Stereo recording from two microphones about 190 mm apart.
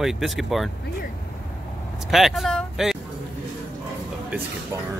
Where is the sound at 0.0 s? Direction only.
Centre (ahead or behind).